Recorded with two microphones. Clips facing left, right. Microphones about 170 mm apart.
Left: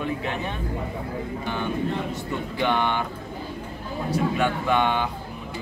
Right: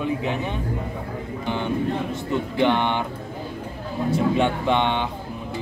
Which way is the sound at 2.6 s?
20° right (ahead or behind).